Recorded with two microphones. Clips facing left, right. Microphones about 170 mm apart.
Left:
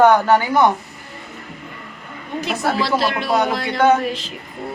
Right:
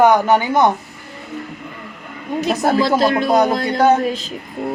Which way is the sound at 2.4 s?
45° right (ahead or behind).